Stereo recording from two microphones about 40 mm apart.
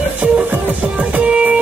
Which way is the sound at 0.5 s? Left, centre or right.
Right.